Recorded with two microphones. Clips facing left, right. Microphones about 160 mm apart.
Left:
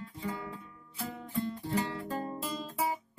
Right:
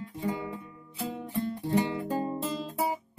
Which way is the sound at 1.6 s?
20° right (ahead or behind).